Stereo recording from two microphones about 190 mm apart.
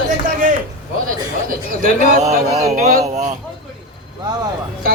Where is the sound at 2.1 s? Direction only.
35° right (ahead or behind).